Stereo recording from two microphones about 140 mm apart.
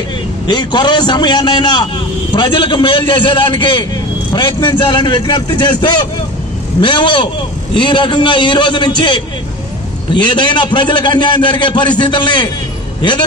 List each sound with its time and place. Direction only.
0.5 s a man's voice: 30° left (ahead or behind)